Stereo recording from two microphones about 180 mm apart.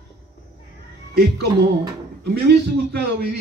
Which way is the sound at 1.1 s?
60° right (ahead or behind).